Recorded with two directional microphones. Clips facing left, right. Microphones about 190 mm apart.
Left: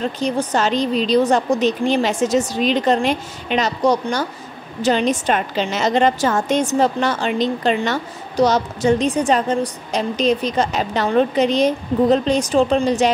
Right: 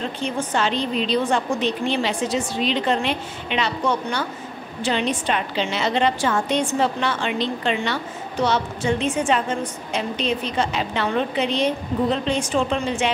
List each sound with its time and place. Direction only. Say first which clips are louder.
0.2 s a woman's voice: left 4 dB; 40° left (ahead or behind)